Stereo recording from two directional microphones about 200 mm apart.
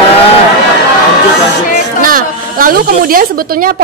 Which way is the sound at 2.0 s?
45° right (ahead or behind).